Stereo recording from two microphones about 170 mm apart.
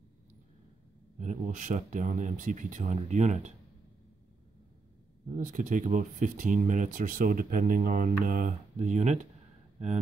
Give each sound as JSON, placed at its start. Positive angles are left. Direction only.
{"t": 1.1, "sound": "speech", "side_deg": -45}
{"t": 5.5, "sound": "speech", "side_deg": -50}